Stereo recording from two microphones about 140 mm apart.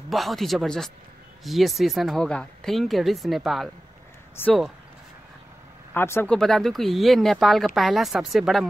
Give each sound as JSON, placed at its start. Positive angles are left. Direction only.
{"t": 0.1, "sound": "speech", "side_deg": 0}
{"t": 4.4, "sound": "speech", "side_deg": 15}
{"t": 5.9, "sound": "speech", "side_deg": 15}
{"t": 6.3, "sound": "speech", "side_deg": 5}